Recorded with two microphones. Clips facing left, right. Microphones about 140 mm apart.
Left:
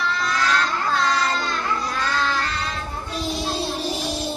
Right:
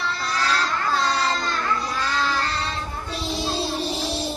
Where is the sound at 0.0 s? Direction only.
30° right (ahead or behind).